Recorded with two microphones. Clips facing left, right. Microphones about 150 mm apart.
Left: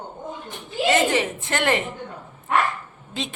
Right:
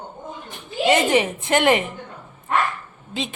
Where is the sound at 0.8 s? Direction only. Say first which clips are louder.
Right 2 dB; 20° right (ahead or behind).